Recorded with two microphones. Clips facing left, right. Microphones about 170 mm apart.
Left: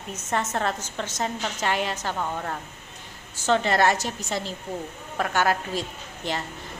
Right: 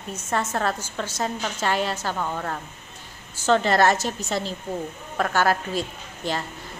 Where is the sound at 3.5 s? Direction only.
40° right (ahead or behind).